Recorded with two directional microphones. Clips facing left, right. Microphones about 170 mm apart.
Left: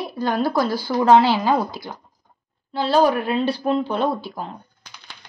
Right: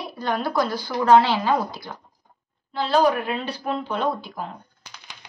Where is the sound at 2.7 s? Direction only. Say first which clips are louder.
Left 2 dB; 35° left (ahead or behind).